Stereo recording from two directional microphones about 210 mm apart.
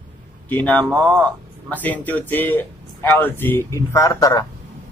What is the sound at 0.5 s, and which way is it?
A man's voice, 5° left (ahead or behind).